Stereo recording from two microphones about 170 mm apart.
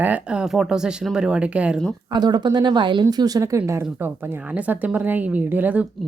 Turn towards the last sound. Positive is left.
turn(degrees=-10)  # may be behind; listen again after turning